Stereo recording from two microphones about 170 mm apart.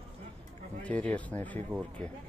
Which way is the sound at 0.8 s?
10° left (ahead or behind).